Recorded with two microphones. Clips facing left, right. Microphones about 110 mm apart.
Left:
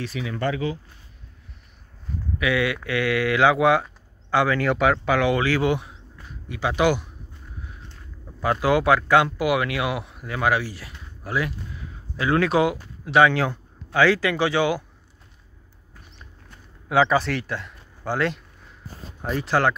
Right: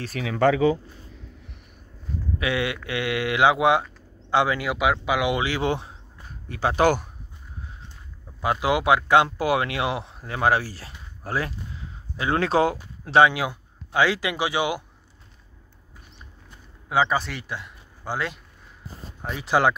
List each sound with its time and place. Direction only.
0.2 s speech: 85° right
2.3 s speech: 25° right (ahead or behind)
4.6 s speech: 10° right (ahead or behind); by 7.1 s 40° right (ahead or behind)
8.4 s speech: 20° right (ahead or behind)
13.2 s speech: 10° right (ahead or behind)
16.4 s a sound: 5° right (ahead or behind)
19.2 s speech: 5° right (ahead or behind)